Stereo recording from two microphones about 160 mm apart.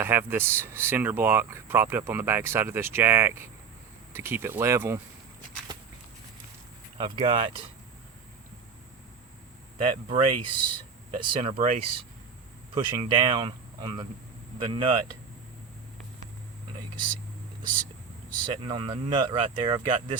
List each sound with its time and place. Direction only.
0.0 s speech: 15° right (ahead or behind)
7.0 s speech: 30° right (ahead or behind)
10.1 s speech: 30° right (ahead or behind)
11.4 s speech: 40° right (ahead or behind)
18.6 s speech: 30° right (ahead or behind)